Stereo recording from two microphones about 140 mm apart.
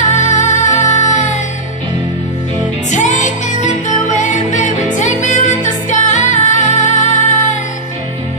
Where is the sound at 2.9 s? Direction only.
60° left (ahead or behind).